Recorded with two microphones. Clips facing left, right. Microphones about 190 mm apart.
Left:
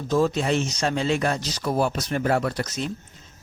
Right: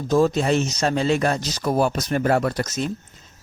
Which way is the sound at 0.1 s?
45° right (ahead or behind).